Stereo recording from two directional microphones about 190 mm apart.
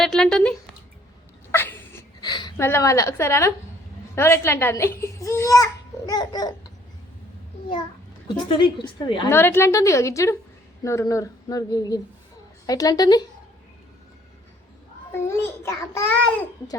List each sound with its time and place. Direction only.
0.0 s a sound: 5° left (ahead or behind)
1.5 s sneeze: 10° left (ahead or behind)
2.3 s a sound: 25° left (ahead or behind)
2.6 s a child's voice: 15° left (ahead or behind)
8.4 s a woman's voice: 25° left (ahead or behind)
9.3 s a child's voice: 10° left (ahead or behind)
15.1 s a child's voice: 15° left (ahead or behind)